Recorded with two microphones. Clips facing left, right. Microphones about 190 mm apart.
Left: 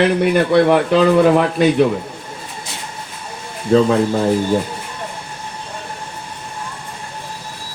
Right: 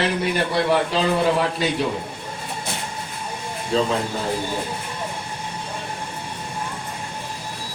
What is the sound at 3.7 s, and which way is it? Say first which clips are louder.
Speech: left 8 dB; 55° left (ahead or behind).